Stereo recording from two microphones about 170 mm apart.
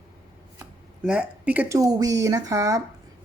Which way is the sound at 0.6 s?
5° right (ahead or behind).